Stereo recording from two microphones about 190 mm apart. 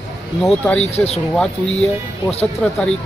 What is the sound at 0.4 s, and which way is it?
Speech, 5° left (ahead or behind).